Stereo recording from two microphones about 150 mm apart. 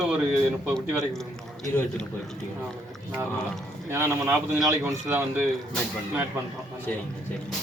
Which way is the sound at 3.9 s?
15° right (ahead or behind).